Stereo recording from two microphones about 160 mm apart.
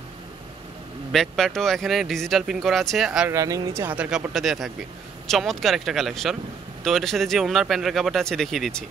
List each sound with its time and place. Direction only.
1.1 s speech: centre (ahead or behind)
3.3 s speech: 20° right (ahead or behind); by 8.8 s centre (ahead or behind)